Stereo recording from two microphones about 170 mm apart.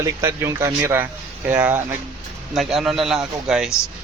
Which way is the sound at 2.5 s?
Centre (ahead or behind).